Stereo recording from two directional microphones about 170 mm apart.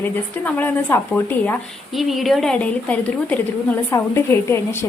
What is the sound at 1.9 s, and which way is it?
A woman's voice, centre (ahead or behind).